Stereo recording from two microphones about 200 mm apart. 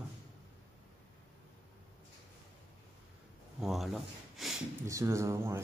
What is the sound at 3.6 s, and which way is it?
Speech, centre (ahead or behind).